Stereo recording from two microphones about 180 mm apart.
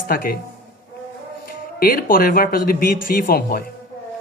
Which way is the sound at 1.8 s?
55° left (ahead or behind).